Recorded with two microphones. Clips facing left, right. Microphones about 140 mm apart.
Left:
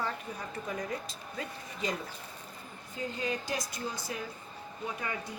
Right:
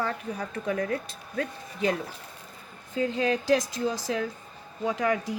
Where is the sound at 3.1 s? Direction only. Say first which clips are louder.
Right 11 dB; 90° right.